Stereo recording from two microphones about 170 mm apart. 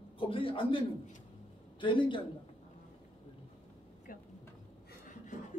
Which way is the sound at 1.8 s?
30° left (ahead or behind).